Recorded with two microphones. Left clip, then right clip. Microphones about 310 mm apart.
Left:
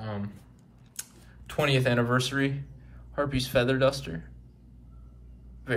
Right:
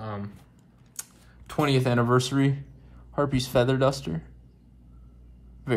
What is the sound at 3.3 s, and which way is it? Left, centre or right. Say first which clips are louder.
Speech: right 1 dB; centre.